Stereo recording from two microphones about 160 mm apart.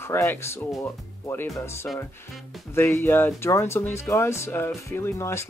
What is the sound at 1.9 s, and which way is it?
Speech, 5° left (ahead or behind).